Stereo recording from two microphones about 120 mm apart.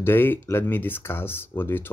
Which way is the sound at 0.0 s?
20° left (ahead or behind).